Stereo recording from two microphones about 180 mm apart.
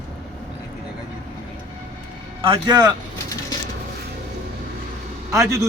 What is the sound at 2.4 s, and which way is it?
Speech, 25° right (ahead or behind).